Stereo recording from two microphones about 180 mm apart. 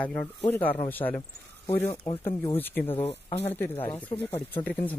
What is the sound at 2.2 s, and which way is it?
Speech, 10° left (ahead or behind).